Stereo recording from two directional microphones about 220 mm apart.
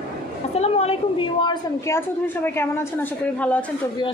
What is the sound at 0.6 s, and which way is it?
Speech, 30° left (ahead or behind).